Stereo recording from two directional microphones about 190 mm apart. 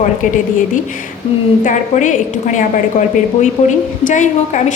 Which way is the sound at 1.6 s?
40° left (ahead or behind).